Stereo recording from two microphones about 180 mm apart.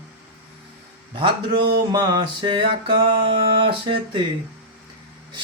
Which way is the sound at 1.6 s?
65° right (ahead or behind).